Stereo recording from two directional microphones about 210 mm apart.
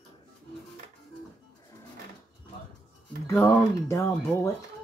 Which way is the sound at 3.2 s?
10° left (ahead or behind).